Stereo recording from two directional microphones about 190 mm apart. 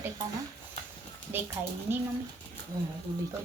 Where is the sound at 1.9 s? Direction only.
10° right (ahead or behind).